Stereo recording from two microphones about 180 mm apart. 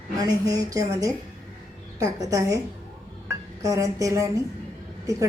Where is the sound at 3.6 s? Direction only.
20° right (ahead or behind).